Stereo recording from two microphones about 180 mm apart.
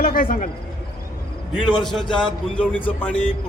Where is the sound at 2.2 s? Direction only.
5° left (ahead or behind).